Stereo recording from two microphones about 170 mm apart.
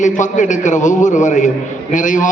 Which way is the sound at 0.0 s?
45° left (ahead or behind).